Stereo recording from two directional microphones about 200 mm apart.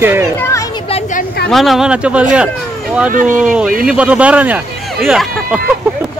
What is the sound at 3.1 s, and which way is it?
Speech, 40° right (ahead or behind).